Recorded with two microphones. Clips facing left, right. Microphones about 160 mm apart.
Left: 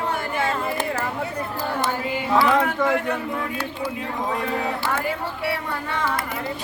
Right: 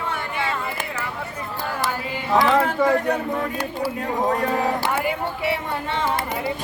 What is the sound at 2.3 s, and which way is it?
Speech, 20° right (ahead or behind).